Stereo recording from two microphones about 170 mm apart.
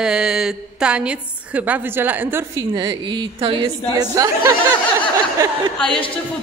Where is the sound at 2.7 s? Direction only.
25° right (ahead or behind).